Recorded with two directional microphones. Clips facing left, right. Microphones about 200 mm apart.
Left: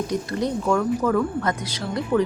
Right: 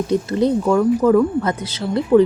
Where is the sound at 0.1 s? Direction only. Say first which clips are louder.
Right 7 dB; 30° right (ahead or behind).